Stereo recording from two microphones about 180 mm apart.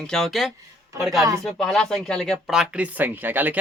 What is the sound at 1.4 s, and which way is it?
Speech, centre (ahead or behind).